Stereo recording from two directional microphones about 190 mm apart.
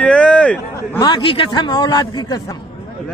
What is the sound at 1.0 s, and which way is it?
A man's voice, 25° left (ahead or behind).